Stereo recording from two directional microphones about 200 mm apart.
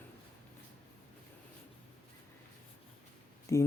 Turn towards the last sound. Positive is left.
turn(degrees=15)  # may be behind; listen again after turning